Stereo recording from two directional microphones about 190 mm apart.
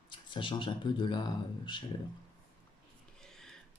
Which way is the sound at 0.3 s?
25° left (ahead or behind).